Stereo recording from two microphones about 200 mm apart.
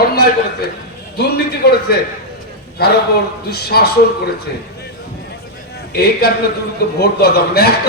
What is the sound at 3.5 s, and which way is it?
Speech, 55° left (ahead or behind).